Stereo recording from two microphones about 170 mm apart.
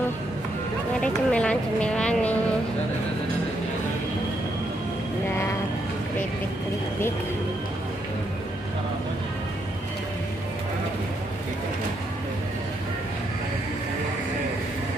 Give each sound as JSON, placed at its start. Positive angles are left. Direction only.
{"t": 1.0, "sound": "speech", "side_deg": 5}